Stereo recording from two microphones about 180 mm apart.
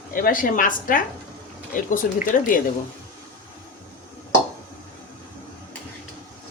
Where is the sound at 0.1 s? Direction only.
50° left (ahead or behind).